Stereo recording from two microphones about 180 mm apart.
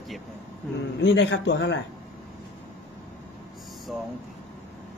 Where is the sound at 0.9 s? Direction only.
70° left (ahead or behind).